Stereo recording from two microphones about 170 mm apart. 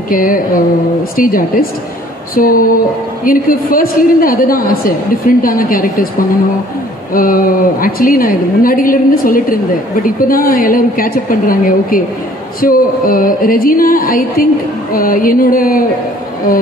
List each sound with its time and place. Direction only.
0.1 s mantra: 55° left (ahead or behind)
1.1 s music: 55° left (ahead or behind)
7.2 s music: 55° left (ahead or behind)